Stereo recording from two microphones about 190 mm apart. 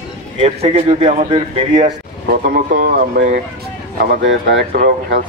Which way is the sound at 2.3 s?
50° right (ahead or behind).